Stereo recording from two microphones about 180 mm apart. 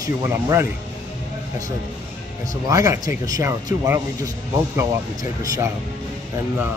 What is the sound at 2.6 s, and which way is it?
A man's voice, 20° right (ahead or behind).